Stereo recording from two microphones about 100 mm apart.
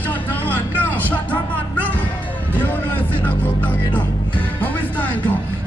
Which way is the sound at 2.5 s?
20° left (ahead or behind).